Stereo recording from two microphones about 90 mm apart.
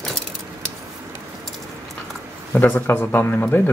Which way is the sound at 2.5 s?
20° left (ahead or behind).